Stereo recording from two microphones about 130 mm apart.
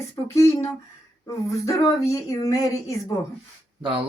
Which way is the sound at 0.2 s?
30° left (ahead or behind).